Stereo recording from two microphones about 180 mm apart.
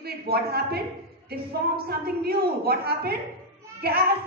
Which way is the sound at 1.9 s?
60° right (ahead or behind).